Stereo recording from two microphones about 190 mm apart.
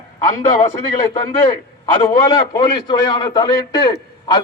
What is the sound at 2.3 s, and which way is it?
A man's voice, 20° left (ahead or behind).